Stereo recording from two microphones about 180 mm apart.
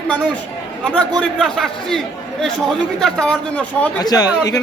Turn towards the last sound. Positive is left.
turn(degrees=20)  # may be behind; listen again after turning